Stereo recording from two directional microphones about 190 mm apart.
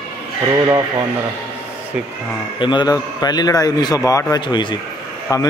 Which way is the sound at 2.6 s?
25° left (ahead or behind).